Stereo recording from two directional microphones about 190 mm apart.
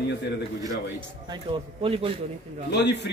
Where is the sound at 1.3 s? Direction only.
25° right (ahead or behind).